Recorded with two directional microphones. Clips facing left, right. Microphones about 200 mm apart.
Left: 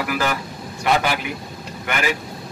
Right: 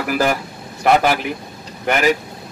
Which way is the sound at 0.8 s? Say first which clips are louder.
Right 5 dB; 45° right (ahead or behind).